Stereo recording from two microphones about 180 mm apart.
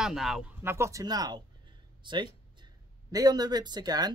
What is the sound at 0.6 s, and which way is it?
Speech, 15° right (ahead or behind).